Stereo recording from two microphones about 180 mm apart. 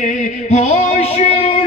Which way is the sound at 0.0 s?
40° left (ahead or behind).